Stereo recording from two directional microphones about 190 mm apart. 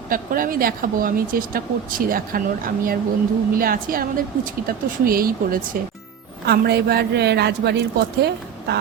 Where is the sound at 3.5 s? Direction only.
50° right (ahead or behind).